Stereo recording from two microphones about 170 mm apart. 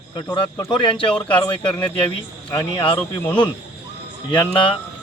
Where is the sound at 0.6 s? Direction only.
25° left (ahead or behind).